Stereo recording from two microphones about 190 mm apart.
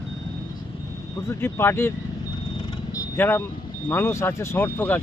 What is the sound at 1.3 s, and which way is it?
Speech, 15° left (ahead or behind).